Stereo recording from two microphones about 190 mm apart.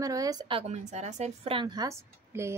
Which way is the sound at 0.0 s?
20° right (ahead or behind).